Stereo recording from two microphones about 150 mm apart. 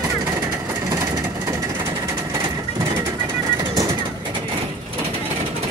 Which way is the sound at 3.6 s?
25° right (ahead or behind).